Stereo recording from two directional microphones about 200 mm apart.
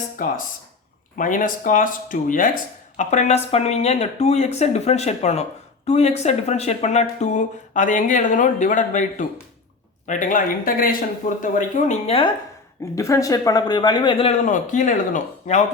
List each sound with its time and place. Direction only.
0.2 s speech: 45° left (ahead or behind)
13.0 s speech: 15° left (ahead or behind)
14.4 s speech: 40° left (ahead or behind)